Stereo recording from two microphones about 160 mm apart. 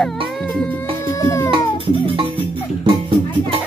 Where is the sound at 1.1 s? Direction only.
20° left (ahead or behind).